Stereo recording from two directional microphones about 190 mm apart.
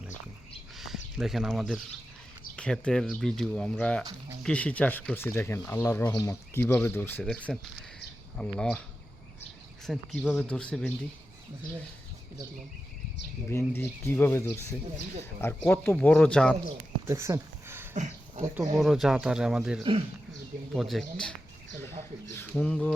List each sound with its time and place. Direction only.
0.8 s speech: centre (ahead or behind)
10.2 s speech: centre (ahead or behind)
13.5 s speech: 15° left (ahead or behind)
16.6 s a sound: 15° right (ahead or behind)
17.9 s a sound: 40° right (ahead or behind)
18.8 s speech: centre (ahead or behind)